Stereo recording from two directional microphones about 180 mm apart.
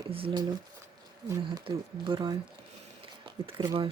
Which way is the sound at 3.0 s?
30° right (ahead or behind).